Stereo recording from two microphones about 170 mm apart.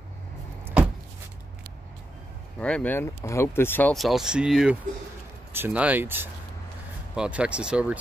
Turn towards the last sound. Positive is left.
turn(degrees=-5)  # may be behind; listen again after turning